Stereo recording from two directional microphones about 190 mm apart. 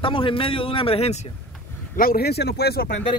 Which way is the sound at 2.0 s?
55° left (ahead or behind).